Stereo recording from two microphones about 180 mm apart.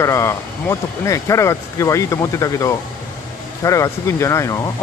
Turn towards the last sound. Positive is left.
turn(degrees=15)  # may be behind; listen again after turning